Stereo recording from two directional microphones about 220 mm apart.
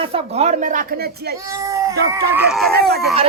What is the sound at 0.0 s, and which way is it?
Speech, 25° right (ahead or behind).